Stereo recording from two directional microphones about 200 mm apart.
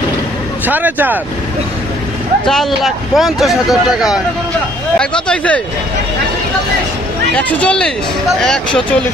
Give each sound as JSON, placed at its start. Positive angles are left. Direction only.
{"t": 0.7, "sound": "speech", "side_deg": -10}
{"t": 2.4, "sound": "speech", "side_deg": 0}
{"t": 7.3, "sound": "speech", "side_deg": 5}